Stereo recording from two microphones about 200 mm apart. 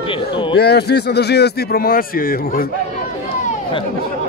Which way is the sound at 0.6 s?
55° left (ahead or behind).